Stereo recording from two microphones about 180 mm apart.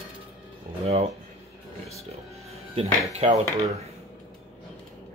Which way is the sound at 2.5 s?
35° right (ahead or behind).